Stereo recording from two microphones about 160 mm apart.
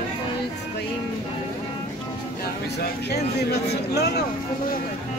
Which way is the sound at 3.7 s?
90° left.